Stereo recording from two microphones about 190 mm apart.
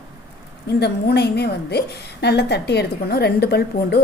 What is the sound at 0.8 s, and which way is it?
A woman's voice, 60° left (ahead or behind).